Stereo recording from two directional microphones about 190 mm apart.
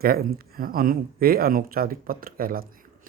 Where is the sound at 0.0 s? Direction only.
50° right (ahead or behind).